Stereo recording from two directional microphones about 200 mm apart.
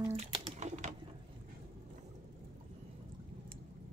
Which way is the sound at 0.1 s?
35° right (ahead or behind).